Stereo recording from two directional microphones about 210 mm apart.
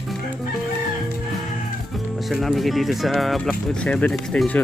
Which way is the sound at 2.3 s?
Centre (ahead or behind).